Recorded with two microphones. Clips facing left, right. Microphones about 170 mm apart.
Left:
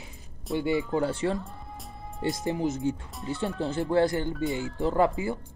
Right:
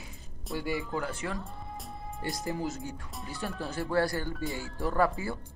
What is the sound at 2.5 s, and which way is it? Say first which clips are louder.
Speech: left 8 dB; 20° left (ahead or behind).